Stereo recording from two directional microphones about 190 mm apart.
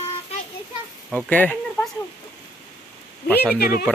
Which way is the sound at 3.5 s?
50° left (ahead or behind).